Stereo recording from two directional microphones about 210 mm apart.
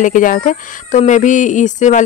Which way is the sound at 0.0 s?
40° left (ahead or behind).